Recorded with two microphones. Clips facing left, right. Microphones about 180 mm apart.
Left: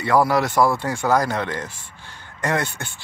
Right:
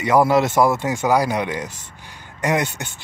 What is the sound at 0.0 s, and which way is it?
Speech, 20° right (ahead or behind).